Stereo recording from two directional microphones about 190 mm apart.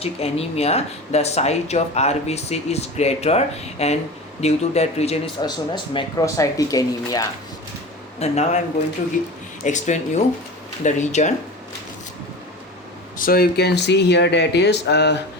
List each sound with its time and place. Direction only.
0.0 s speech: 30° left (ahead or behind)
5.4 s speech: 25° left (ahead or behind)
8.2 s speech: 35° left (ahead or behind)
9.6 s speech: 40° left (ahead or behind)
13.1 s speech: 50° left (ahead or behind)